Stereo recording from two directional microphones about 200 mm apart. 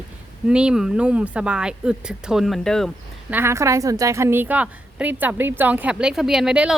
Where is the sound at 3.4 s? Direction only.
15° right (ahead or behind).